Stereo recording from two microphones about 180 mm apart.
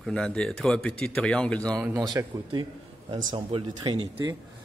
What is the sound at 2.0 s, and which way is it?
Speech, 20° right (ahead or behind).